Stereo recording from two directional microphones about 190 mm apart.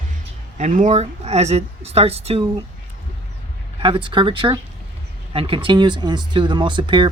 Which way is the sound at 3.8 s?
25° right (ahead or behind).